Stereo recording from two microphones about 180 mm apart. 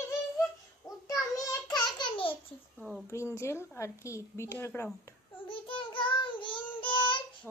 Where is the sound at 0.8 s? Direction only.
15° left (ahead or behind).